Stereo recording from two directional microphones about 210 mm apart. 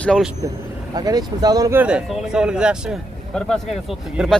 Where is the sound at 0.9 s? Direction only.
20° right (ahead or behind).